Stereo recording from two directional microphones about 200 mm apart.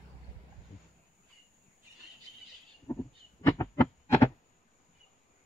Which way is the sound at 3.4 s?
15° left (ahead or behind).